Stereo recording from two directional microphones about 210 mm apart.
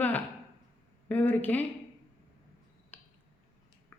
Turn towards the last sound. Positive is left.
turn(degrees=5)  # may be behind; listen again after turning